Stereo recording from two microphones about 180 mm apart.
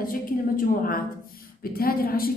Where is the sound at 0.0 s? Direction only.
50° left (ahead or behind).